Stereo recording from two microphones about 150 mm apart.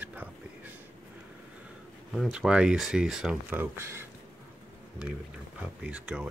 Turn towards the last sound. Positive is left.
turn(degrees=-5)  # may be behind; listen again after turning